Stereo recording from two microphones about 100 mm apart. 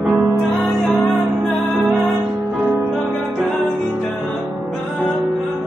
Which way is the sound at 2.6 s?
25° right (ahead or behind).